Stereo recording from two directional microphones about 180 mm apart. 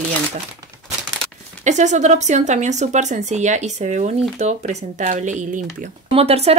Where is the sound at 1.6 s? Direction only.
40° right (ahead or behind).